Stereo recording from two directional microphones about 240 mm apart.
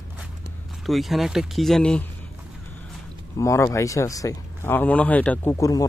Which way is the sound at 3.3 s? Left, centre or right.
Centre.